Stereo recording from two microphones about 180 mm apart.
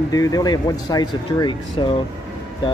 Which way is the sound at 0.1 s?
20° left (ahead or behind).